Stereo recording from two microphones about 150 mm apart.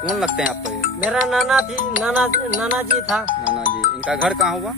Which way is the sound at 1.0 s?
Centre (ahead or behind).